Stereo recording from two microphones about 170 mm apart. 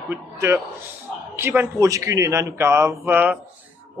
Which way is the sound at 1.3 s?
10° right (ahead or behind).